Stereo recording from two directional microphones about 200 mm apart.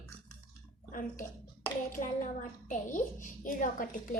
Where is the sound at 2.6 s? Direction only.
40° left (ahead or behind).